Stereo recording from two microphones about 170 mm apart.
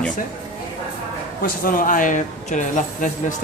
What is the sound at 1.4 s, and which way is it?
Speech, 55° left (ahead or behind).